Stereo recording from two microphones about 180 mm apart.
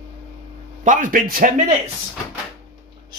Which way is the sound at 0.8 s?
45° right (ahead or behind).